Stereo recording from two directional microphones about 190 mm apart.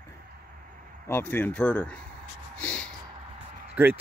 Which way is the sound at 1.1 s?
10° left (ahead or behind).